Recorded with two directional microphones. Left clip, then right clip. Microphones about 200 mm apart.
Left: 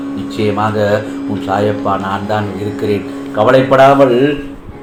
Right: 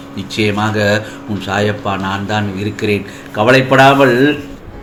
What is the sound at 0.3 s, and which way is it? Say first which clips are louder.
Speech: even; 45° right (ahead or behind).